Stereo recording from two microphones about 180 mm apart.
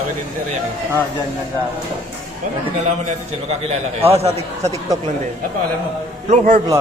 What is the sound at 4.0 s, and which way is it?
Speech, 35° right (ahead or behind).